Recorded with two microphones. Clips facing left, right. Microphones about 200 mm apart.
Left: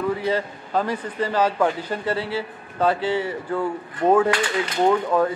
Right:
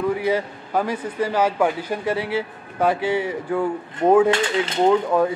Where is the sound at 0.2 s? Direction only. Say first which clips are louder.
Right 2 dB; 10° right (ahead or behind).